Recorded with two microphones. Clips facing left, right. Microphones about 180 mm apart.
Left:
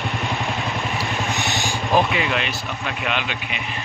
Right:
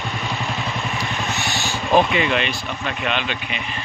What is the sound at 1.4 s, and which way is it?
Vehicle, 20° left (ahead or behind).